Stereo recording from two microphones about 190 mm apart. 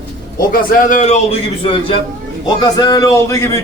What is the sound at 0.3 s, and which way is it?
A man's voice, 45° left (ahead or behind).